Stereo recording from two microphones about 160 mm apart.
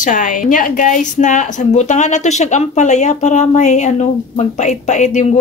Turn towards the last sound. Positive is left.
turn(degrees=50)  # may be behind; listen again after turning